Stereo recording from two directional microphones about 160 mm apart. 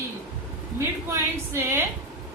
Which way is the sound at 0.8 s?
15° right (ahead or behind).